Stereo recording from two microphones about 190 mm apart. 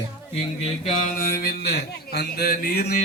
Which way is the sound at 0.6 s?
45° left (ahead or behind).